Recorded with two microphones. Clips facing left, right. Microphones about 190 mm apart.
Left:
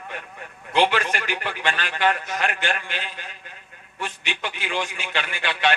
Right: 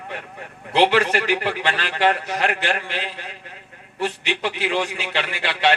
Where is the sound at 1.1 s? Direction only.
35° right (ahead or behind).